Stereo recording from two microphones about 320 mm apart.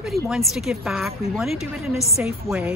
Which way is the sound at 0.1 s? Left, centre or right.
Centre.